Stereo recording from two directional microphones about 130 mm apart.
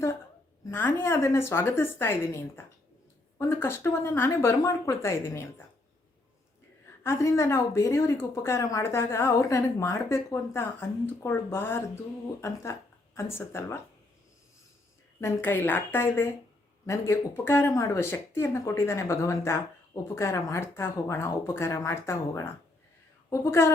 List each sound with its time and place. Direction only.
0.6 s speech: 15° left (ahead or behind)
7.0 s speech: 20° left (ahead or behind)
15.2 s a woman's voice: 15° left (ahead or behind)